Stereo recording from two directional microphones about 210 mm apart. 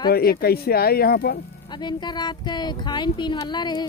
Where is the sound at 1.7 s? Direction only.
20° left (ahead or behind).